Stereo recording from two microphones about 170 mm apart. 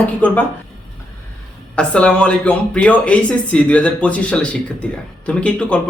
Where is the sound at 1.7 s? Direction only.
5° left (ahead or behind).